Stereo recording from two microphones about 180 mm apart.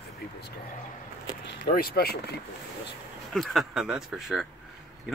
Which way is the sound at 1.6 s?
60° left (ahead or behind).